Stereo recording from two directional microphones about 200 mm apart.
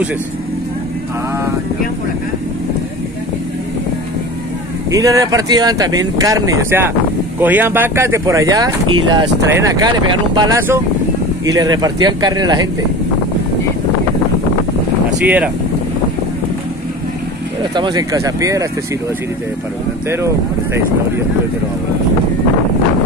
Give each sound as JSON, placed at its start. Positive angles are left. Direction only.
{"t": 4.9, "sound": "speech", "side_deg": -15}
{"t": 15.2, "sound": "speech", "side_deg": -5}
{"t": 17.7, "sound": "speech", "side_deg": -20}